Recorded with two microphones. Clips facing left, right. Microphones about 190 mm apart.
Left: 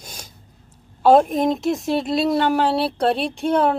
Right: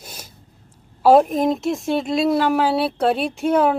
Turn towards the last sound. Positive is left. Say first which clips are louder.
# right 1 dB
turn(degrees=-5)  # may be behind; listen again after turning